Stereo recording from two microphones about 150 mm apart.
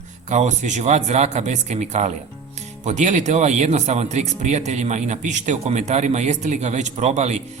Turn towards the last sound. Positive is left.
turn(degrees=-50)  # may be behind; listen again after turning